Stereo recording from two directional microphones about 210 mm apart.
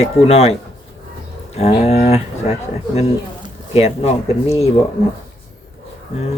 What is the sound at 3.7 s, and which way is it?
Speech, 30° left (ahead or behind).